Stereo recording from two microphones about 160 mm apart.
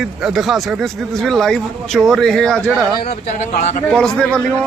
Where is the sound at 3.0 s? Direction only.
45° left (ahead or behind).